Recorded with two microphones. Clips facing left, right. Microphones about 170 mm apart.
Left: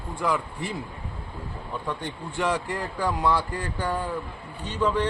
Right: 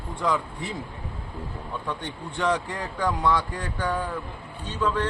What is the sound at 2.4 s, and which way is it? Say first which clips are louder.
Speech: right 1 dB; 10° left (ahead or behind).